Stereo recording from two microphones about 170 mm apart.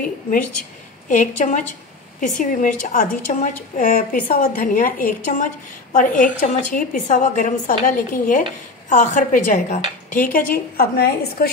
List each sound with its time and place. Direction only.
1.0 s a woman's voice: 50° left (ahead or behind)